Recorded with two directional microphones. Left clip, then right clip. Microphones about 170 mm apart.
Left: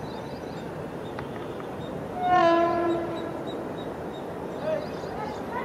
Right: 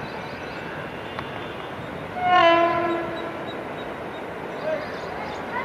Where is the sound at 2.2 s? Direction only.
Centre (ahead or behind).